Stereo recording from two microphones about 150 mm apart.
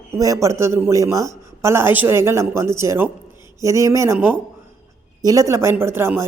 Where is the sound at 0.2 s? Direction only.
20° right (ahead or behind).